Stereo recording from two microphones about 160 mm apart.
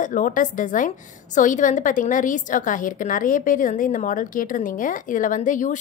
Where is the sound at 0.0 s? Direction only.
55° left (ahead or behind).